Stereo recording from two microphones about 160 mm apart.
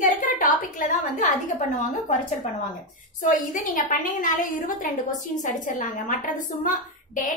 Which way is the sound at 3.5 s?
55° left (ahead or behind).